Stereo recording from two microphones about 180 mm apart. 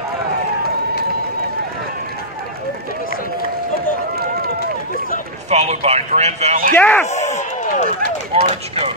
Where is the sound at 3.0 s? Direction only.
50° left (ahead or behind).